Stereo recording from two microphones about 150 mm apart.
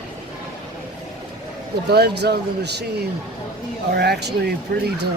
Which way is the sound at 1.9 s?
90° right.